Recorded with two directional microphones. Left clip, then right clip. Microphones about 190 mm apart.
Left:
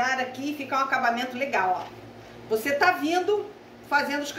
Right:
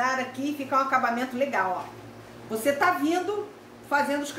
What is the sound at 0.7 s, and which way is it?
Speech, 40° right (ahead or behind).